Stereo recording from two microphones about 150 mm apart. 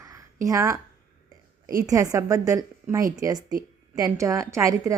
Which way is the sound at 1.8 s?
20° right (ahead or behind).